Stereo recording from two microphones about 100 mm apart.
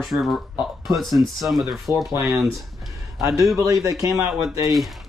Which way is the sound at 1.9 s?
20° right (ahead or behind).